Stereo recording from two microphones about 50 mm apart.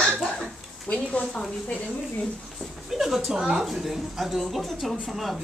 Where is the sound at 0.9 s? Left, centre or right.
Left.